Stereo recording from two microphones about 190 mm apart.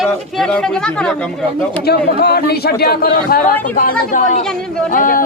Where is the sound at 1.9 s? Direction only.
60° left (ahead or behind).